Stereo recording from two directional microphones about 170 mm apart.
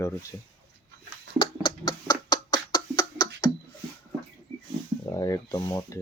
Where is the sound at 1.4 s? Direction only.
30° left (ahead or behind).